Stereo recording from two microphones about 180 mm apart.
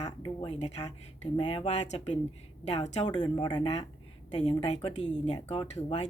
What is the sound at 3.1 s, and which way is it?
A woman's voice, 25° left (ahead or behind).